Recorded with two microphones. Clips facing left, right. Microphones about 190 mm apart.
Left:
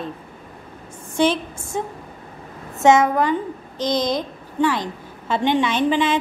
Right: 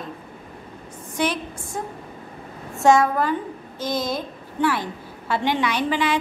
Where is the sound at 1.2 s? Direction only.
25° left (ahead or behind).